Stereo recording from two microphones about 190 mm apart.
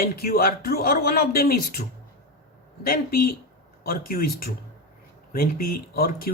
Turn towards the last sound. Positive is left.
turn(degrees=50)  # may be behind; listen again after turning